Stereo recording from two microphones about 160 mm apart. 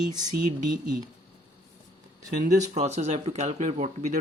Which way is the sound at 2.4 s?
45° right (ahead or behind).